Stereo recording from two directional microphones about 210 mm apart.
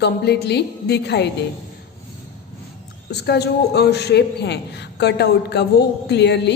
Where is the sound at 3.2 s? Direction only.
50° left (ahead or behind).